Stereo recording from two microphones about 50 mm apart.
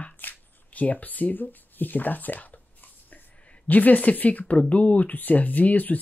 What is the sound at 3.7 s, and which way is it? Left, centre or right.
Speech, left.